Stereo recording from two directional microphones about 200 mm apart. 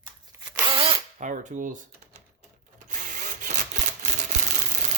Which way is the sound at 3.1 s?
40° right (ahead or behind).